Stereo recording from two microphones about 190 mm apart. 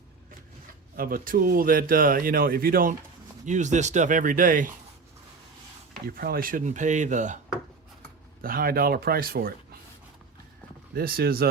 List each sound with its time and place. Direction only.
0.9 s speech: 50° right (ahead or behind)
3.4 s speech: 40° right (ahead or behind)
6.1 s speech: 50° right (ahead or behind)
8.4 s speech: 50° right (ahead or behind)
10.9 s speech: 50° right (ahead or behind)